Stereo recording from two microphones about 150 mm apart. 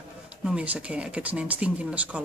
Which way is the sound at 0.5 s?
10° right (ahead or behind).